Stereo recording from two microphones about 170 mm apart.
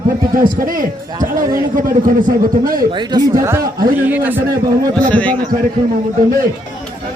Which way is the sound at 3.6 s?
60° right (ahead or behind).